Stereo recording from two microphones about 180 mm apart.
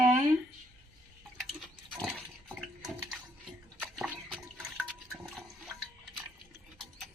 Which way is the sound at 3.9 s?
5° right (ahead or behind).